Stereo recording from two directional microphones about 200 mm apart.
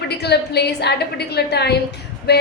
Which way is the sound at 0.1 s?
55° left (ahead or behind).